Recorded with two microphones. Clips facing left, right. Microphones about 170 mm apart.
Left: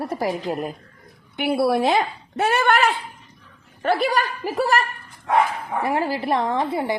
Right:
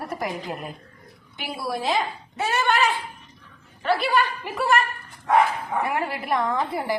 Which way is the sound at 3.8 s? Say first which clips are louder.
Left 1 dB; 45° left (ahead or behind).